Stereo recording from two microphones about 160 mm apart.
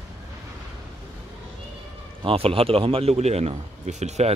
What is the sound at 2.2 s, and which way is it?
Speech, 35° right (ahead or behind).